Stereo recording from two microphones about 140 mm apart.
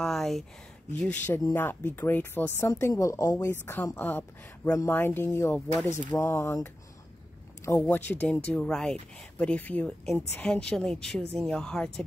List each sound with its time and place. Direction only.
0.0 s speech: centre (ahead or behind); by 6.7 s 20° left (ahead or behind)
7.8 s speech: 10° left (ahead or behind)